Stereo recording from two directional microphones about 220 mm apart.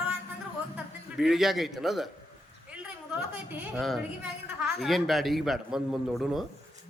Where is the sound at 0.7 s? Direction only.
Centre (ahead or behind).